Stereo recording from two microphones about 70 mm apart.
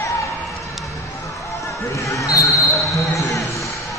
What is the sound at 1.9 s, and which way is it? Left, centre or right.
Speech, left.